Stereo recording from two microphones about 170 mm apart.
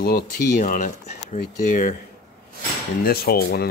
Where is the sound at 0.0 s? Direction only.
60° left (ahead or behind).